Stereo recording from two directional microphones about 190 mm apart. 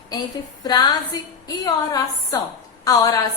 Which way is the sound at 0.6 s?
20° left (ahead or behind).